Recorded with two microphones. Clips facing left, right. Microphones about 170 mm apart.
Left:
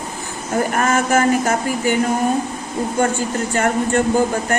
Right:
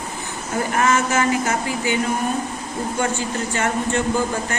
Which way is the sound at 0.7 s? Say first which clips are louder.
Left 1 dB; 50° left (ahead or behind).